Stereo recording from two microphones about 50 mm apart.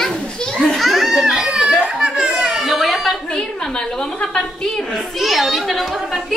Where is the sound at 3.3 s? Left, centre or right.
Centre.